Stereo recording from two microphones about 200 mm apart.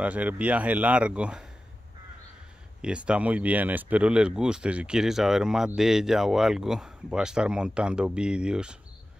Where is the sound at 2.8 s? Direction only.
5° right (ahead or behind).